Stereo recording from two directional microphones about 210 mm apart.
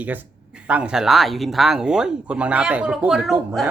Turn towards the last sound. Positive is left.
turn(degrees=0)  # may be behind; listen again after turning